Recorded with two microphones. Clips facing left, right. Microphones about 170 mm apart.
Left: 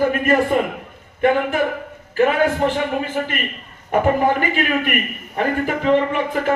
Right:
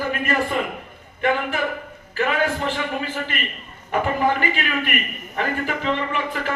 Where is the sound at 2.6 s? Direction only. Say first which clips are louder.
Left 6 dB; 50° left (ahead or behind).